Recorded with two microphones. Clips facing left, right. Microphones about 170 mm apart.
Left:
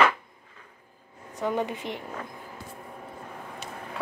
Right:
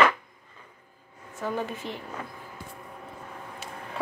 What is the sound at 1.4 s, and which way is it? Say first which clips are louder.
Speech: left 3 dB; 20° left (ahead or behind).